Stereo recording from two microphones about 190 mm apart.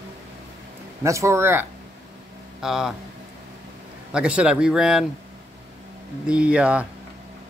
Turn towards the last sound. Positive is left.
turn(degrees=-5)  # may be behind; listen again after turning